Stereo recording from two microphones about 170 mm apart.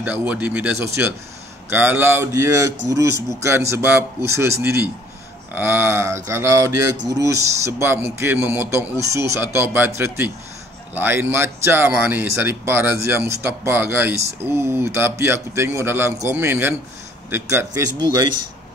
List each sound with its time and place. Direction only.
0.0 s speech: 10° right (ahead or behind)